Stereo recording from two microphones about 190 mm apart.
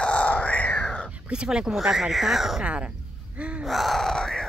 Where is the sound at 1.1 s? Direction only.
5° right (ahead or behind).